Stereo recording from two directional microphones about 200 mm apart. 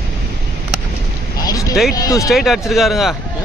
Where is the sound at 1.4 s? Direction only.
20° left (ahead or behind).